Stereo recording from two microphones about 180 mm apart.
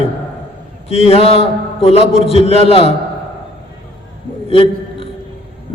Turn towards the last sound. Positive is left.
turn(degrees=30)  # may be behind; listen again after turning